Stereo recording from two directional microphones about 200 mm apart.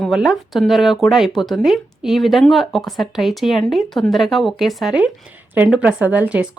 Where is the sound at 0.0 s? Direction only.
Centre (ahead or behind).